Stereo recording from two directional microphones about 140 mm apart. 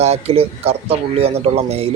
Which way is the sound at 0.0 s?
50° right (ahead or behind).